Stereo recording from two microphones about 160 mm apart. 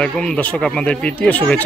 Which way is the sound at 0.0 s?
5° left (ahead or behind).